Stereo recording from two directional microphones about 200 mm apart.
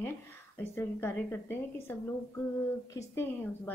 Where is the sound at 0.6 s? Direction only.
10° left (ahead or behind).